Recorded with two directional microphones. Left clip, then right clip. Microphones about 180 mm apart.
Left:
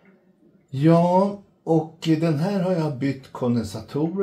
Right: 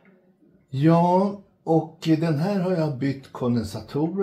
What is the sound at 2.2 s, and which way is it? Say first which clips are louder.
Speech: left 1 dB; 25° right (ahead or behind).